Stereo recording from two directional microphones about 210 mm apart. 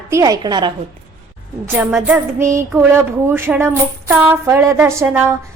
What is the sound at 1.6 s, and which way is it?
Child singing, 10° right (ahead or behind).